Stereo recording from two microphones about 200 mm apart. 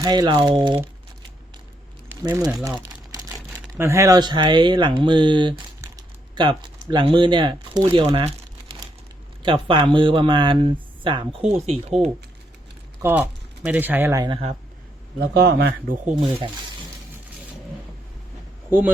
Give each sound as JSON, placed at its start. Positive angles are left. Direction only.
{"t": 0.0, "sound": "speech", "side_deg": -20}
{"t": 2.2, "sound": "speech", "side_deg": -20}
{"t": 2.6, "sound": "crumpling", "side_deg": -15}
{"t": 3.8, "sound": "speech", "side_deg": -15}
{"t": 13.0, "sound": "speech", "side_deg": -10}
{"t": 15.2, "sound": "speech", "side_deg": -55}
{"t": 16.1, "sound": "speech", "side_deg": -25}